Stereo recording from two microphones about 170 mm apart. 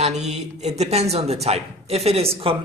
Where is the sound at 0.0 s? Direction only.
40° right (ahead or behind).